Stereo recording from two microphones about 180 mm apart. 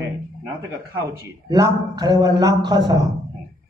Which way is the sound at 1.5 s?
20° right (ahead or behind).